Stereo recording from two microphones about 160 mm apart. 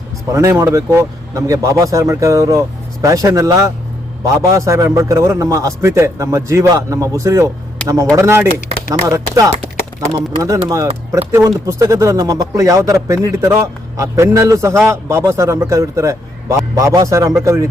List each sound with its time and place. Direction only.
0.3 s speech: 20° right (ahead or behind)